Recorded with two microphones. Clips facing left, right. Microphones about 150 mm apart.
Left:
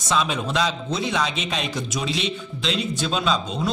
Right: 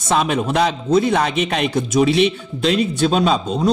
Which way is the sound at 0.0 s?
55° right (ahead or behind).